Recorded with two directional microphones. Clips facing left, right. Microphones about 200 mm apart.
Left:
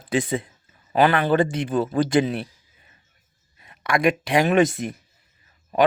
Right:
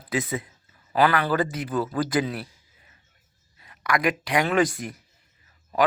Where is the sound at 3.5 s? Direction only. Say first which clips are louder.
Left 3 dB; 25° left (ahead or behind).